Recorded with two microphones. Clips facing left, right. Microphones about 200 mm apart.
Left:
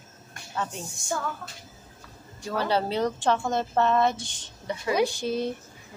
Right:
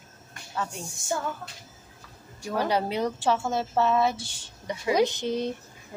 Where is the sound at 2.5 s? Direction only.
15° right (ahead or behind).